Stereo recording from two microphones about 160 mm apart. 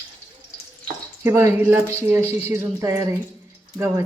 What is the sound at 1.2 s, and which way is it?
Speech, 15° right (ahead or behind).